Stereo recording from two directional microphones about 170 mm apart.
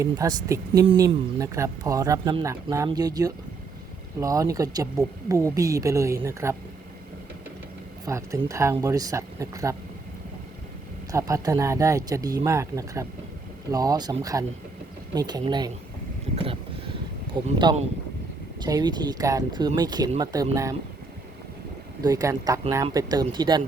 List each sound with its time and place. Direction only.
0.0 s speech: 20° right (ahead or behind)
8.0 s speech: 20° right (ahead or behind)
11.1 s speech: 20° right (ahead or behind)
16.3 s vehicle: 35° right (ahead or behind)
17.4 s speech: 25° right (ahead or behind)
18.6 s speech: 25° right (ahead or behind)
22.0 s speech: 20° right (ahead or behind)